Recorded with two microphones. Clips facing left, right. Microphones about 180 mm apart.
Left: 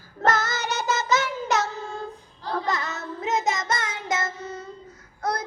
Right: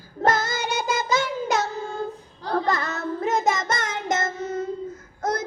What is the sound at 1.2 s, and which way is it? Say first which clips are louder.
Child singing: right 1 dB; 30° right (ahead or behind).